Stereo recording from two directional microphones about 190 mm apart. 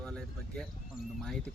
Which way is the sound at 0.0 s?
5° left (ahead or behind).